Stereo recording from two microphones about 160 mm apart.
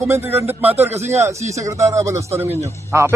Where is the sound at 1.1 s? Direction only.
20° right (ahead or behind).